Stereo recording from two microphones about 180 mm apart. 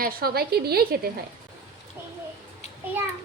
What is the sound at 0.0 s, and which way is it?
Speech, 55° right (ahead or behind).